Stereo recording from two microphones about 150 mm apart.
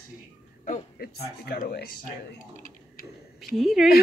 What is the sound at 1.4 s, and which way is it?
Speech, 90° left.